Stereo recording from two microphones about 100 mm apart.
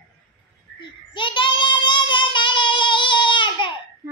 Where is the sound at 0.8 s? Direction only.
55° left (ahead or behind).